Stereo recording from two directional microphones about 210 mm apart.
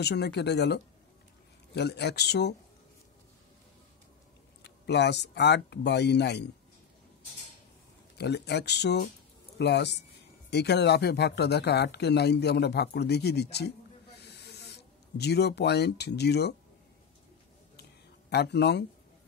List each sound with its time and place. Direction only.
0.0 s speech: 50° left (ahead or behind)
4.6 s speech: 55° left (ahead or behind)
8.2 s speech: 55° left (ahead or behind)
18.3 s speech: 50° left (ahead or behind)